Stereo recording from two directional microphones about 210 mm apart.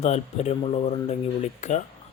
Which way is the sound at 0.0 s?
30° left (ahead or behind).